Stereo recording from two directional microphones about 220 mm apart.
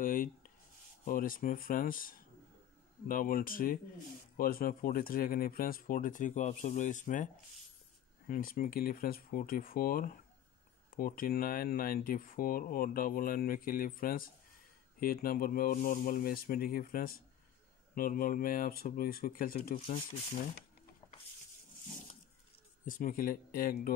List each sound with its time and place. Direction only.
0.0 s writing: 40° left (ahead or behind)
1.0 s speech: 40° left (ahead or behind)
8.3 s speech: 40° left (ahead or behind)
22.8 s speech: 40° left (ahead or behind)